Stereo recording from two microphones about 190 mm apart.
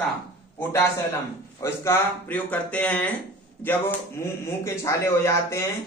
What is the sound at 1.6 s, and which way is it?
A man's voice, 10° left (ahead or behind).